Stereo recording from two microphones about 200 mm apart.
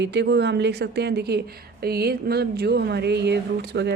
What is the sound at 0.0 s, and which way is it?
Speech, 60° right (ahead or behind).